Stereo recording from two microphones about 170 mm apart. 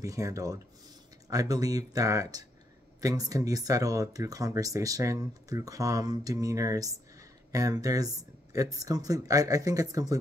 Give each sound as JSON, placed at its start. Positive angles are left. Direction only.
{"t": 0.0, "sound": "speech", "side_deg": -20}